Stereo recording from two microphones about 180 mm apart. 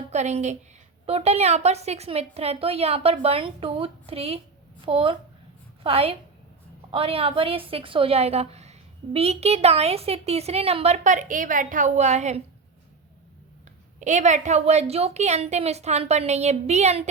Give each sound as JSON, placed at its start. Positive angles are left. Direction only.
{"t": 0.1, "sound": "a woman's voice", "side_deg": -40}
{"t": 14.0, "sound": "a woman's voice", "side_deg": -40}